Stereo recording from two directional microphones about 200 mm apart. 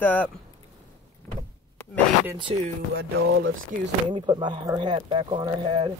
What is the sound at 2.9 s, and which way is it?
Music, 60° right (ahead or behind).